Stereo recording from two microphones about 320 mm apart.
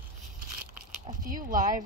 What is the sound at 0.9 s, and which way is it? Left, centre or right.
Speech, right.